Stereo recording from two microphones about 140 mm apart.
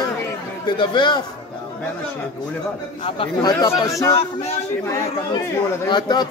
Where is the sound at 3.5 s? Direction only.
25° left (ahead or behind).